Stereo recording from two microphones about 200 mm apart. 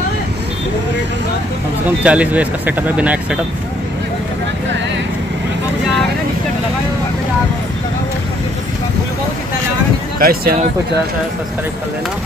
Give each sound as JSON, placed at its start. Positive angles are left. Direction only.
{"t": 1.9, "sound": "speech", "side_deg": -5}
{"t": 10.1, "sound": "speech", "side_deg": -50}